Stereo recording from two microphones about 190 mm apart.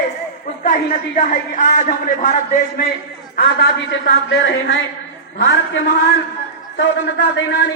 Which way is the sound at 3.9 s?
75° left (ahead or behind).